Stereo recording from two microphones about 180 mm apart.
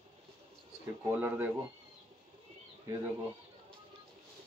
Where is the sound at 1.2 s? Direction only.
10° right (ahead or behind).